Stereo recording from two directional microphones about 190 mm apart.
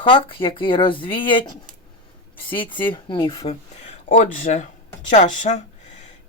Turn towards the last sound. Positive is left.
turn(degrees=35)  # may be behind; listen again after turning